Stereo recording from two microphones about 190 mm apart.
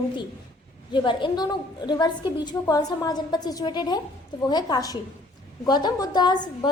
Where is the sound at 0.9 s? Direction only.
25° left (ahead or behind).